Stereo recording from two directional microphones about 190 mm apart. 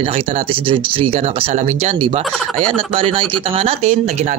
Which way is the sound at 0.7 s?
25° right (ahead or behind).